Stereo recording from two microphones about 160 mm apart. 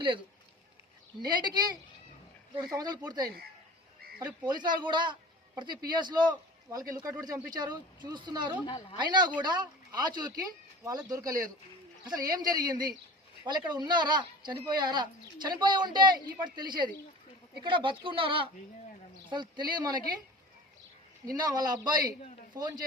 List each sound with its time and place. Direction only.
1.2 s speech: 25° right (ahead or behind)
2.7 s speech: 25° right (ahead or behind)
4.4 s speech: 25° right (ahead or behind)
8.6 s speech: 30° left (ahead or behind)
9.0 s speech: 30° right (ahead or behind)
21.3 s speech: 25° right (ahead or behind)